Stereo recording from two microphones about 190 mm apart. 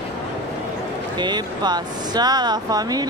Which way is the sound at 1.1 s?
20° right (ahead or behind).